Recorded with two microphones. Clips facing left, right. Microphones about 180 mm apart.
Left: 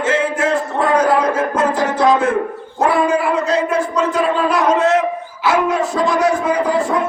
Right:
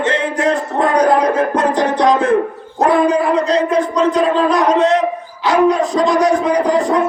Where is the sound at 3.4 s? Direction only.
5° left (ahead or behind).